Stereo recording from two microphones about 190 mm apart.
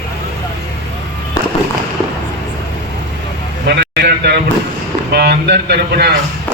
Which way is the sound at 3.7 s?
60° right (ahead or behind).